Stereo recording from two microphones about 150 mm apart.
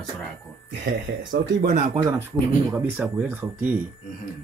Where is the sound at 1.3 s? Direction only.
75° right (ahead or behind).